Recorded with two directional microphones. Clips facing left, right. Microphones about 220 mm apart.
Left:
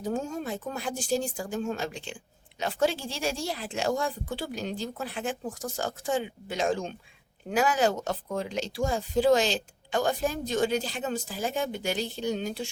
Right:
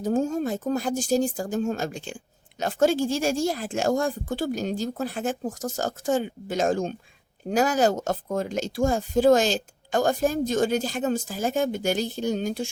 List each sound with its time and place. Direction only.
0.0 s speech: 45° right (ahead or behind)